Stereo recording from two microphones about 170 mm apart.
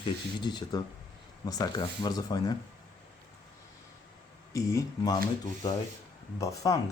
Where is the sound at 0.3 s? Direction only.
25° left (ahead or behind).